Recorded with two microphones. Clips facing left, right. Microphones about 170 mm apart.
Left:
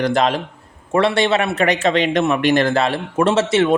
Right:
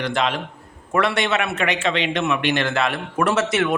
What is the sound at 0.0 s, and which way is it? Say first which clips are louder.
Speech: left 5 dB; 40° left (ahead or behind).